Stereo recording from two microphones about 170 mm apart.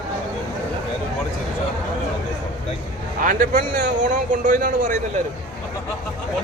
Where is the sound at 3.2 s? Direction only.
50° right (ahead or behind).